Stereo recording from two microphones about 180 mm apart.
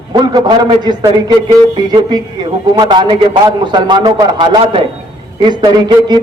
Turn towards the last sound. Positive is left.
turn(degrees=-25)  # may be behind; listen again after turning